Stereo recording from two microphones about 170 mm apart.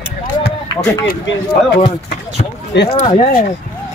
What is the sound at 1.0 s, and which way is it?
Speech, 65° left (ahead or behind).